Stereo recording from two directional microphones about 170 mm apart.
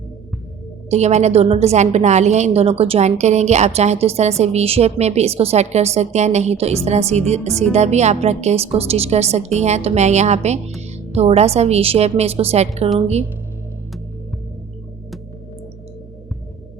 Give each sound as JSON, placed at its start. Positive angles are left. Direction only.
{"t": 0.9, "sound": "a woman's voice", "side_deg": -40}